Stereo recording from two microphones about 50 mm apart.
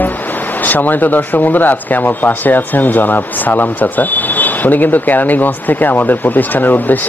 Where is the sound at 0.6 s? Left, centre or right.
Left.